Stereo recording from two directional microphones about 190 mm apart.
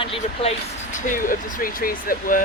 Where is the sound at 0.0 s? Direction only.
30° left (ahead or behind).